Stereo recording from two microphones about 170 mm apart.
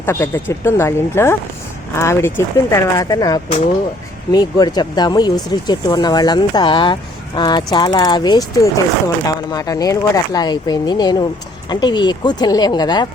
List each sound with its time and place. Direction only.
0.0 s speech: 15° left (ahead or behind)